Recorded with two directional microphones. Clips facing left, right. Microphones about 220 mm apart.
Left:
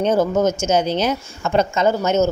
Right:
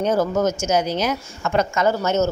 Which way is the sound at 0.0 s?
20° left (ahead or behind).